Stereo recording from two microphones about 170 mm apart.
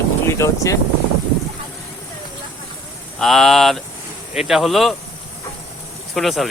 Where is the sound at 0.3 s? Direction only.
15° left (ahead or behind).